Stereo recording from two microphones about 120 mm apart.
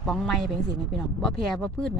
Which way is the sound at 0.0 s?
Centre (ahead or behind).